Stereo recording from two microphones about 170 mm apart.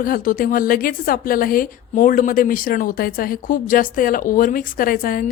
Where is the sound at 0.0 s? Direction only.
55° left (ahead or behind).